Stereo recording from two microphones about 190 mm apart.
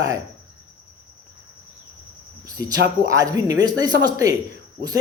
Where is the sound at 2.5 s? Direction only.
20° right (ahead or behind).